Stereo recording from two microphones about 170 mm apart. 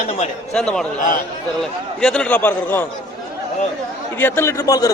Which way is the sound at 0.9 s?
50° left (ahead or behind).